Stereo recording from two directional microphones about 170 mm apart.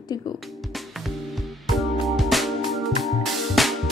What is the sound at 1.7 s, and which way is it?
Music, centre (ahead or behind).